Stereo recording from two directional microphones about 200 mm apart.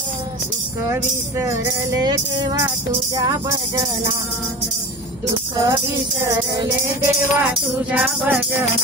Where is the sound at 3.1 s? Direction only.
20° right (ahead or behind).